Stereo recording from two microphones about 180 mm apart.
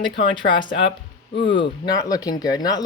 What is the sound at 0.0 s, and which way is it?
Speech, 25° left (ahead or behind).